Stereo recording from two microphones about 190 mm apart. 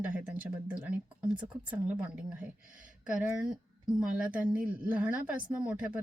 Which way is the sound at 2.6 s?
45° right (ahead or behind).